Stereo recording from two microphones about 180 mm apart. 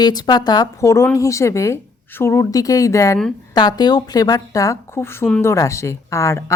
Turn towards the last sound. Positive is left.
turn(degrees=15)  # may be behind; listen again after turning